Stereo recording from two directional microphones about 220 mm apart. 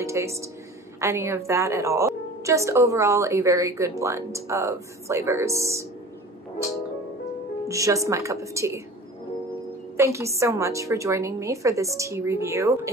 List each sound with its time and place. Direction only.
0.0 s a woman's voice: 15° right (ahead or behind)
7.6 s a woman's voice: 15° right (ahead or behind)
9.9 s a woman's voice: 15° right (ahead or behind)